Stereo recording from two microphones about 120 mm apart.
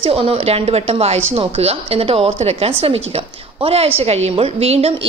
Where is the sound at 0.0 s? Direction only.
55° right (ahead or behind).